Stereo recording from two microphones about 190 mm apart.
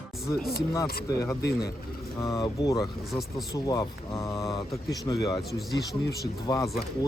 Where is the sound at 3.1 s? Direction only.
Centre (ahead or behind).